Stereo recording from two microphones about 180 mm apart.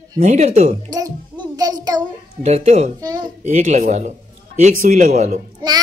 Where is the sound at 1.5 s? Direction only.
20° right (ahead or behind).